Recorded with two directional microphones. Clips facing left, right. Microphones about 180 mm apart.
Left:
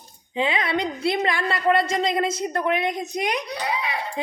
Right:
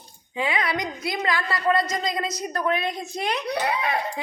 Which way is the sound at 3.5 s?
50° right (ahead or behind).